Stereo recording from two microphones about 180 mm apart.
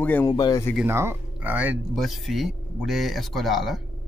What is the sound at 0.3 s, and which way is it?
Speech, 20° left (ahead or behind).